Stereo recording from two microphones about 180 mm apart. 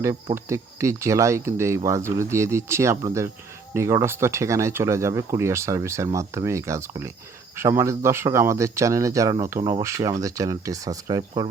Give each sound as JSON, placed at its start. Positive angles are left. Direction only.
{"t": 0.3, "sound": "speech", "side_deg": -15}